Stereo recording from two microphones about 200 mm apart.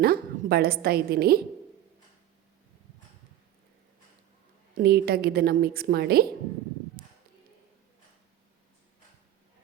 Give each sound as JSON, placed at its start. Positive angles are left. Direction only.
{"t": 0.0, "sound": "a woman's voice", "side_deg": -50}
{"t": 4.8, "sound": "a woman's voice", "side_deg": -50}
{"t": 7.0, "sound": "a sound", "side_deg": -50}